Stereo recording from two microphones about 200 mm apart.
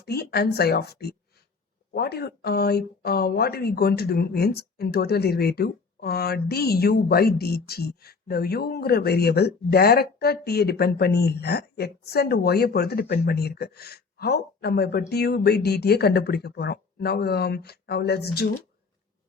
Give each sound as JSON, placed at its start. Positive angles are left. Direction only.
{"t": 0.0, "sound": "speech", "side_deg": 55}